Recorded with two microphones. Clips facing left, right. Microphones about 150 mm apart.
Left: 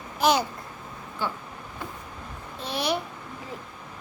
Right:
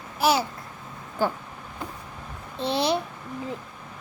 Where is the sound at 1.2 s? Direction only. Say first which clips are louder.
Right 6 dB; 45° right (ahead or behind).